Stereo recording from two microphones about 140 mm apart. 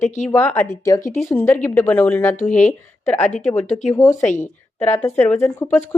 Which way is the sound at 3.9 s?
20° left (ahead or behind).